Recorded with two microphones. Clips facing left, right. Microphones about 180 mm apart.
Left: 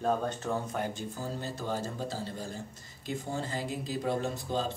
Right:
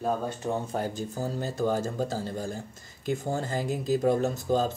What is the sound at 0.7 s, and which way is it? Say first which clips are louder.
Speech: right 4 dB; 40° right (ahead or behind).